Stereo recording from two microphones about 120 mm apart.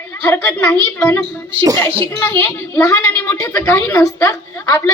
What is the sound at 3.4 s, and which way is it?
Speech, 25° left (ahead or behind).